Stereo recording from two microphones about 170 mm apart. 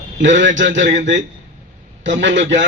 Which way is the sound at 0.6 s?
90° right.